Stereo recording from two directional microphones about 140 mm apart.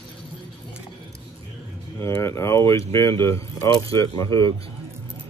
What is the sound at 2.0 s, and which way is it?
Speech, 20° left (ahead or behind).